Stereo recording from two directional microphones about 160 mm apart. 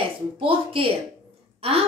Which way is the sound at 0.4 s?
35° right (ahead or behind).